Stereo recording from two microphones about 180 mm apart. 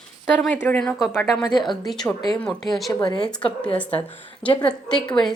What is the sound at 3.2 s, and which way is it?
Speech, 5° left (ahead or behind).